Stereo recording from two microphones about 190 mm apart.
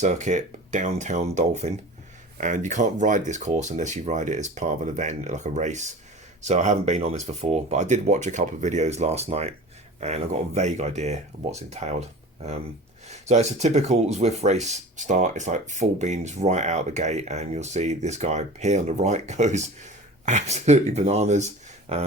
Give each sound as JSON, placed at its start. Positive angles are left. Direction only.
{"t": 0.0, "sound": "speech", "side_deg": -40}
{"t": 13.1, "sound": "speech", "side_deg": -35}